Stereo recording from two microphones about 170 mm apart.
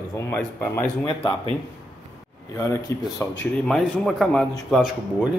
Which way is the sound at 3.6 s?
Centre (ahead or behind).